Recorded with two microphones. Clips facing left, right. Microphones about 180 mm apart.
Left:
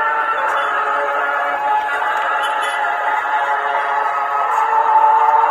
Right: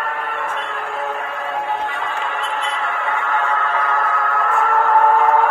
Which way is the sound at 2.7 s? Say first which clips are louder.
Left 4 dB; 40° left (ahead or behind).